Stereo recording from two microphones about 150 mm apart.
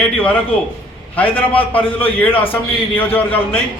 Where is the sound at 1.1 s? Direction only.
10° left (ahead or behind).